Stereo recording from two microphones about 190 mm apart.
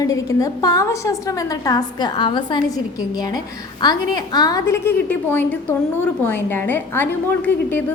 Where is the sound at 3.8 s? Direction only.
20° left (ahead or behind).